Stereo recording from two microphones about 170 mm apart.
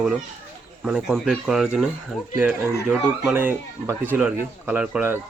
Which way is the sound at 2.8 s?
5° right (ahead or behind).